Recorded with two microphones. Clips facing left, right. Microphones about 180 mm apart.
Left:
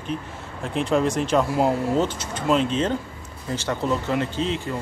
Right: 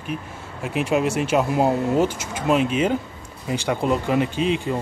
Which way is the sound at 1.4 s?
20° right (ahead or behind).